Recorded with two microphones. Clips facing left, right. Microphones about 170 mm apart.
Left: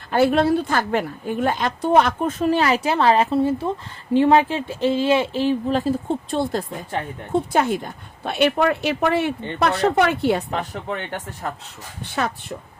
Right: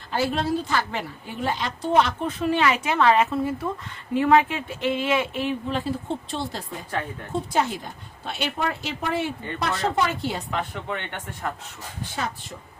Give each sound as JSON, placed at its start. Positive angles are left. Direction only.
{"t": 0.1, "sound": "a woman's voice", "side_deg": 60}
{"t": 6.3, "sound": "a woman's voice", "side_deg": 50}
{"t": 10.5, "sound": "speech", "side_deg": 35}
{"t": 12.1, "sound": "speech", "side_deg": 60}